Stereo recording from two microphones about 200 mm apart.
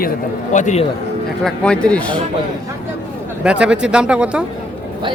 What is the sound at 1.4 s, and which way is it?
Speech, 5° left (ahead or behind).